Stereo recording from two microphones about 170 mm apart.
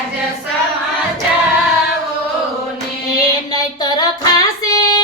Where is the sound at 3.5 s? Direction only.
25° left (ahead or behind).